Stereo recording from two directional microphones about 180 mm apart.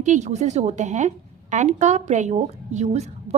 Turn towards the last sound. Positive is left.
turn(degrees=-40)  # may be behind; listen again after turning